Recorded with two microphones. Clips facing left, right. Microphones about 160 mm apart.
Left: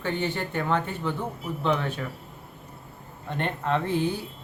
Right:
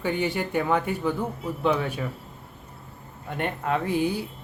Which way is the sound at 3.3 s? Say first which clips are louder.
Even; 10° right (ahead or behind).